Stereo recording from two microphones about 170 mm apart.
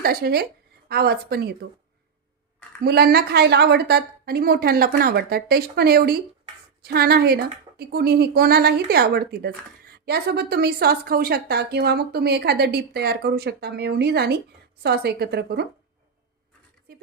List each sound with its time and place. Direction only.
0.0 s a woman's voice: 65° right (ahead or behind)
2.8 s a woman's voice: 70° right (ahead or behind)